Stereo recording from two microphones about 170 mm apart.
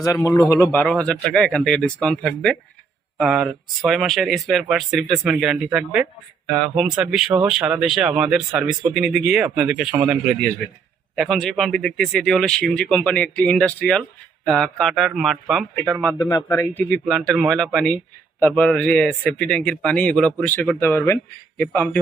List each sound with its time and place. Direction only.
0.0 s speech: 20° left (ahead or behind); by 16.1 s centre (ahead or behind)
16.3 s a man's voice: 15° left (ahead or behind)